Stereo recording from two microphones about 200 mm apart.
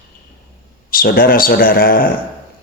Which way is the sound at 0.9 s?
45° left (ahead or behind).